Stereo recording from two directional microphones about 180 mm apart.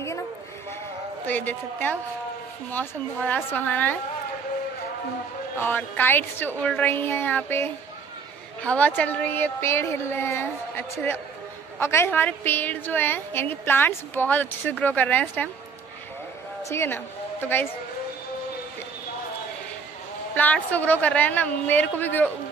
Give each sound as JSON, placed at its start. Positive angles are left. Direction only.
{"t": 1.2, "sound": "a woman's voice", "side_deg": 10}
{"t": 5.6, "sound": "a woman's voice", "side_deg": 10}
{"t": 16.6, "sound": "a woman's voice", "side_deg": 15}
{"t": 20.3, "sound": "a woman's voice", "side_deg": 10}